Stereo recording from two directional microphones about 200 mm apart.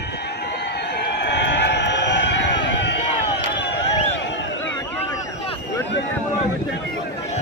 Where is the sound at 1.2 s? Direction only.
60° left (ahead or behind).